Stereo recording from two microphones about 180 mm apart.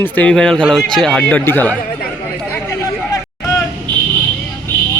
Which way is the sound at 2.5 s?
15° left (ahead or behind).